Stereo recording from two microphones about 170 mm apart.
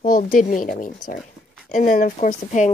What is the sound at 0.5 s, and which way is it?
Speech, centre (ahead or behind).